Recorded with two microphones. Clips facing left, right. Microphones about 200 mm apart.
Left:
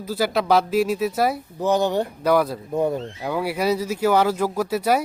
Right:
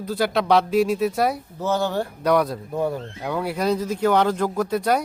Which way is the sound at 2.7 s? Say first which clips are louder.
Left 2 dB; 20° left (ahead or behind).